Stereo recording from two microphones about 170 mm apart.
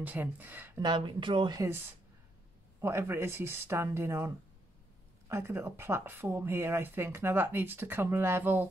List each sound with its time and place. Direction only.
0.0 s speech: 10° right (ahead or behind)
0.7 s speech: 25° right (ahead or behind)
2.8 s speech: 15° right (ahead or behind)
5.3 s speech: 15° right (ahead or behind)